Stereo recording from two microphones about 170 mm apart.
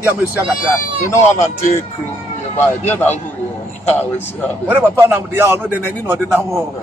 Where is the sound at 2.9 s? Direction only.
10° left (ahead or behind).